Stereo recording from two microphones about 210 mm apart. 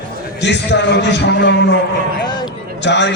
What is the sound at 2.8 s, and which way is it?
Speech, 55° left (ahead or behind).